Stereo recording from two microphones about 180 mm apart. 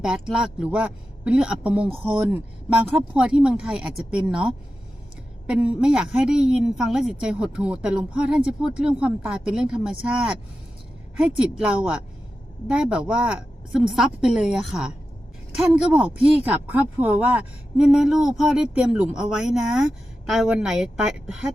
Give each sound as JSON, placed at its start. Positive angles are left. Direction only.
{"t": 0.0, "sound": "speech", "side_deg": -5}